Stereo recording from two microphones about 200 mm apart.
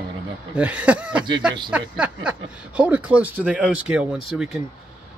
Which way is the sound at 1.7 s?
5° right (ahead or behind).